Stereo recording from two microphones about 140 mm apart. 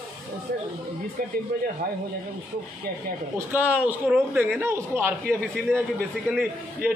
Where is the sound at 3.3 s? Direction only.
10° right (ahead or behind).